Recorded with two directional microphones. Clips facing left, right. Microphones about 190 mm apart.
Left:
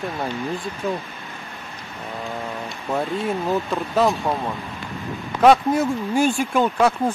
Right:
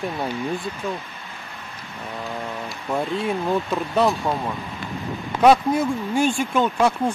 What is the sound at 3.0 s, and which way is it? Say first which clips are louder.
Speech: even; centre (ahead or behind).